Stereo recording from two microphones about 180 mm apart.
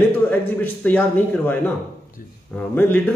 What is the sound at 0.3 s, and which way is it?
A man's voice, 10° left (ahead or behind).